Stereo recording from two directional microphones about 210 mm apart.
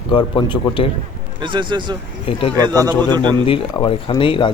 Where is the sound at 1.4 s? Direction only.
20° right (ahead or behind).